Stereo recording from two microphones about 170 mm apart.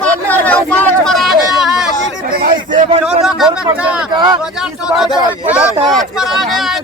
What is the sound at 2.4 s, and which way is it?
Speech, 55° right (ahead or behind).